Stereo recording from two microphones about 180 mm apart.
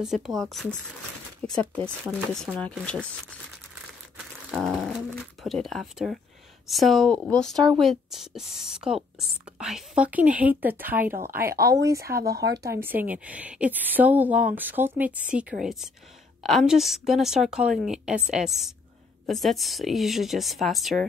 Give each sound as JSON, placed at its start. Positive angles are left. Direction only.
{"t": 0.0, "sound": "a woman's voice", "side_deg": 0}
{"t": 2.3, "sound": "a woman's voice", "side_deg": 5}
{"t": 4.5, "sound": "a woman's voice", "side_deg": 0}
{"t": 11.5, "sound": "speech", "side_deg": -65}
{"t": 12.6, "sound": "a woman's voice", "side_deg": -10}